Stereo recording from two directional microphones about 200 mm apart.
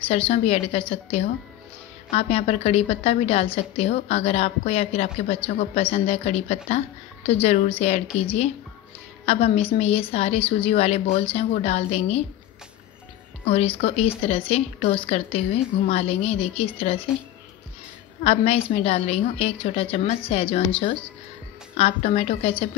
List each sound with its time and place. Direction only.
0.0 s a woman's voice: 30° left (ahead or behind)
13.5 s a woman's voice: 30° left (ahead or behind)
18.2 s a woman's voice: 30° left (ahead or behind)
21.7 s a woman's voice: 30° left (ahead or behind)